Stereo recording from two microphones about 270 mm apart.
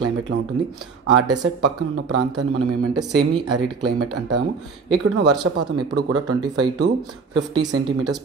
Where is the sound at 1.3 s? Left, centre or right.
Right.